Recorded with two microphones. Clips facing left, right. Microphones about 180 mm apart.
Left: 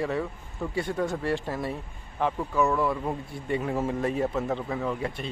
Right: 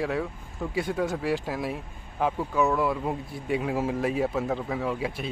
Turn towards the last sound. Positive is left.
turn(degrees=-5)  # may be behind; listen again after turning